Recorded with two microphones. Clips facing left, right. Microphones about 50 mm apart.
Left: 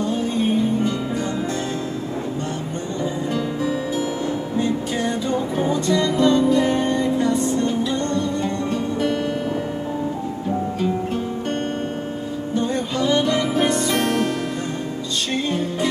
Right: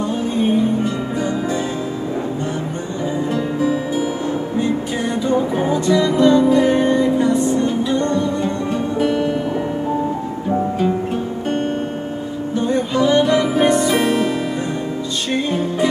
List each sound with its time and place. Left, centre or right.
5.6 s music: centre
12.5 s music: centre